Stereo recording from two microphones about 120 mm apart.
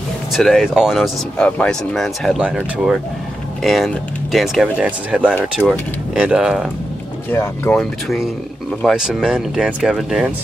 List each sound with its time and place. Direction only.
0.3 s speech: centre (ahead or behind)
7.2 s speech: 15° left (ahead or behind)
8.8 s speech: centre (ahead or behind)